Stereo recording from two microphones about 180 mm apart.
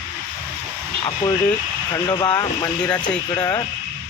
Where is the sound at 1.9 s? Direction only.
25° left (ahead or behind).